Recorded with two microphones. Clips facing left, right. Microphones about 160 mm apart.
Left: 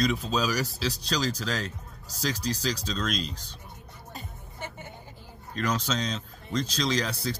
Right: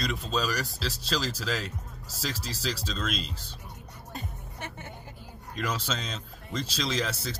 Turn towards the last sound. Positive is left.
turn(degrees=0)  # may be behind; listen again after turning